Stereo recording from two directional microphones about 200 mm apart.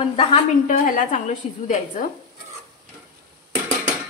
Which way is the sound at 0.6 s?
40° left (ahead or behind).